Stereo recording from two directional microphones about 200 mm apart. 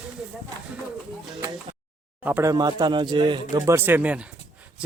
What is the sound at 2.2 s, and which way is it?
A man's voice, 10° right (ahead or behind).